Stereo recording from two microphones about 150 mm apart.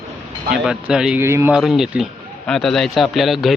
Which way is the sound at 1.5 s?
5° right (ahead or behind).